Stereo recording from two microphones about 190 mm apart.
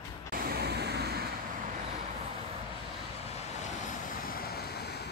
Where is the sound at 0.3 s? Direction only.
50° right (ahead or behind).